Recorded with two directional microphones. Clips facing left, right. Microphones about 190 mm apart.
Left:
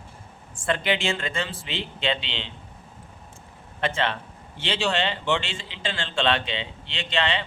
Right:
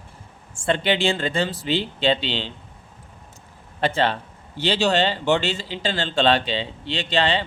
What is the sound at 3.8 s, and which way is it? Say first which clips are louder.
A man's voice: right 5 dB; 35° right (ahead or behind).